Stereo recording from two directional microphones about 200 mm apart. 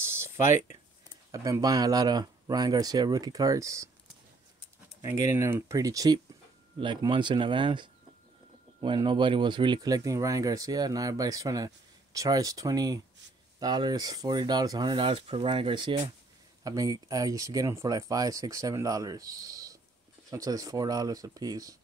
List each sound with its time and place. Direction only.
0.0 s a sound: 10° right (ahead or behind)
1.3 s speech: 15° right (ahead or behind)
5.3 s speech: 15° right (ahead or behind)